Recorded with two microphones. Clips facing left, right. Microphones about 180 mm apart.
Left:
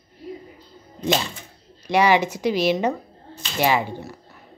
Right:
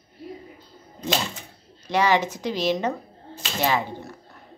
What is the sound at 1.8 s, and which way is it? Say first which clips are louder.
Speech: left 3 dB; 10° left (ahead or behind).